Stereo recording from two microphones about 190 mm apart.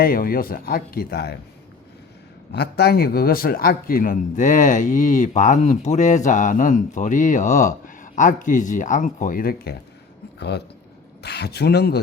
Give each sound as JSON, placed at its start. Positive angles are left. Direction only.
{"t": 0.0, "sound": "speech", "side_deg": 50}
{"t": 2.5, "sound": "a man's voice", "side_deg": 60}